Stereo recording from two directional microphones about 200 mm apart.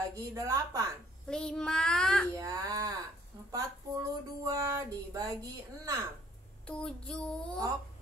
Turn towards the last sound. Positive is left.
turn(degrees=5)  # may be behind; listen again after turning